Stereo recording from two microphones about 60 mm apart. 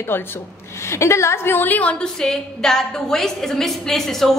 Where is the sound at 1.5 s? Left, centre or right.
Left.